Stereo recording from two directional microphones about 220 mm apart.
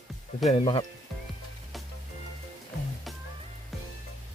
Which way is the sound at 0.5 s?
25° left (ahead or behind).